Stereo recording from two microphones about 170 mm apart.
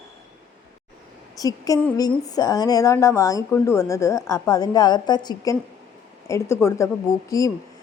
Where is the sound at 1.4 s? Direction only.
20° left (ahead or behind).